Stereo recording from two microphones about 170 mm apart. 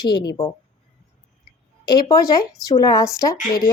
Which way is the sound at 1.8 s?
25° left (ahead or behind).